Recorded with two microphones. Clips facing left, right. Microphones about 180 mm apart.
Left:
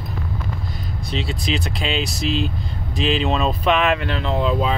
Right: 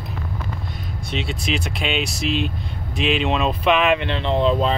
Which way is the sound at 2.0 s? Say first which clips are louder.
Left 1 dB; 35° left (ahead or behind).